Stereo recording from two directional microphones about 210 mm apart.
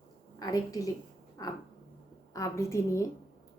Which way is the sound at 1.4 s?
15° left (ahead or behind).